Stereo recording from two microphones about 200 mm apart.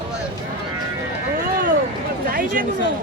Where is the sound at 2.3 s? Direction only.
45° right (ahead or behind).